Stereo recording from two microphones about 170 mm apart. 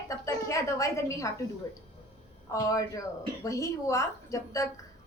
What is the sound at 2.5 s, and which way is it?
A woman's voice, 20° left (ahead or behind).